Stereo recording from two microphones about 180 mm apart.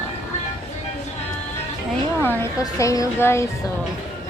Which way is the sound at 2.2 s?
15° left (ahead or behind).